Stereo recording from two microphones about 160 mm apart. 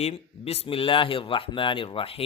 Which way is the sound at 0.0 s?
40° left (ahead or behind).